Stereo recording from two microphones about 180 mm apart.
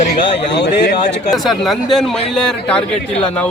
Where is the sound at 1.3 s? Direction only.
Centre (ahead or behind).